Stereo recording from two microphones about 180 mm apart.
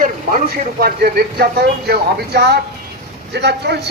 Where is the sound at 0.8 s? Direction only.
60° right (ahead or behind).